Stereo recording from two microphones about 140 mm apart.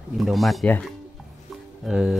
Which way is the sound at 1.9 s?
5° right (ahead or behind).